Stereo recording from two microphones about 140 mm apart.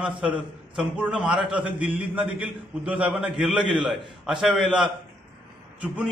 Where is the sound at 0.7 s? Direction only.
5° right (ahead or behind).